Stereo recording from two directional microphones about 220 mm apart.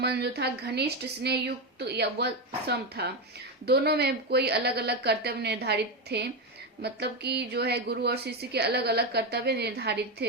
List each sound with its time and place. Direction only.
0.0 s a woman's voice: 50° right (ahead or behind)